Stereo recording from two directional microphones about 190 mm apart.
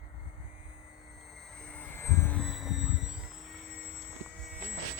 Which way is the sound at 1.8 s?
15° left (ahead or behind).